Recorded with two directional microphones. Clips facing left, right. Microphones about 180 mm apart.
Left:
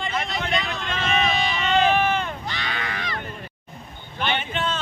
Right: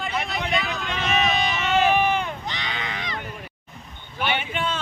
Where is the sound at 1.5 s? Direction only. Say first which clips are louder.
Left 1 dB; 5° right (ahead or behind).